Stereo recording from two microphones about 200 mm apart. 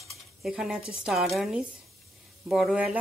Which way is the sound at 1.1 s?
Centre (ahead or behind).